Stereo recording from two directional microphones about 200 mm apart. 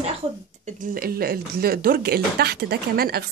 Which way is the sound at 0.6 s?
40° right (ahead or behind).